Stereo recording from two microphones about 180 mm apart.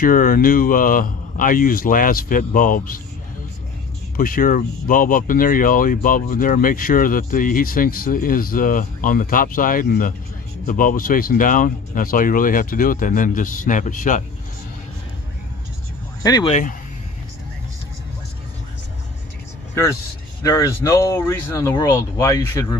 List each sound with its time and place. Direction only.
0.0 s speech: 50° left (ahead or behind)
4.2 s speech: 50° left (ahead or behind)
16.2 s speech: 20° left (ahead or behind)
16.4 s speech: 40° left (ahead or behind)
20.4 s speech: 20° left (ahead or behind)